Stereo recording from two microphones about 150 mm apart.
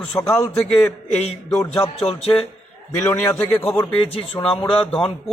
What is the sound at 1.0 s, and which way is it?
Music, 45° left (ahead or behind).